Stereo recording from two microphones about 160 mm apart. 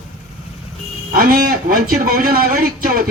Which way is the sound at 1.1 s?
60° right (ahead or behind).